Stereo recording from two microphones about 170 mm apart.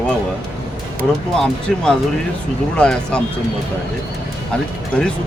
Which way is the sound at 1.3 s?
5° left (ahead or behind).